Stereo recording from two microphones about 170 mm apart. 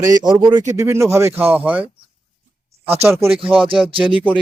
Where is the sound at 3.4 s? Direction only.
30° right (ahead or behind).